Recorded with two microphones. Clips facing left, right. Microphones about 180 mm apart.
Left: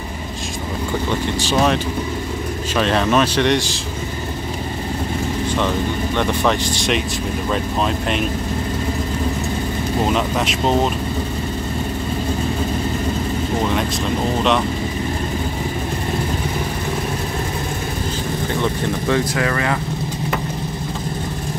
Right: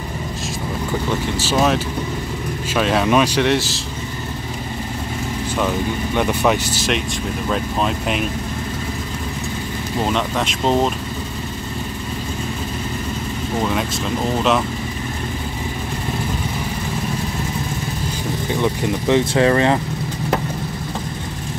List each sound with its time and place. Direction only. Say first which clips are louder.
1.4 s speech: even; 5° right (ahead or behind)
6.1 s speech: right 2 dB; 10° right (ahead or behind)
10.1 s speech: left 2 dB; centre (ahead or behind)
18.5 s speech: right 2 dB; 15° right (ahead or behind)